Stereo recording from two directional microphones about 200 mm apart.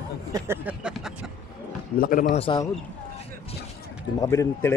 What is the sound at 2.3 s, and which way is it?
Speech, 25° left (ahead or behind).